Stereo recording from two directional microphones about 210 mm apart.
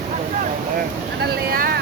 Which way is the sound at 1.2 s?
45° right (ahead or behind).